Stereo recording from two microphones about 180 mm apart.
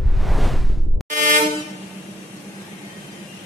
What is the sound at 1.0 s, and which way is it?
Train, 45° right (ahead or behind).